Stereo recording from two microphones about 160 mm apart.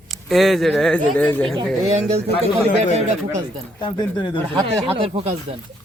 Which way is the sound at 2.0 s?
45° right (ahead or behind).